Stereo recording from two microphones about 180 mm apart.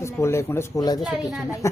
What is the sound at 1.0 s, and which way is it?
Speech, centre (ahead or behind).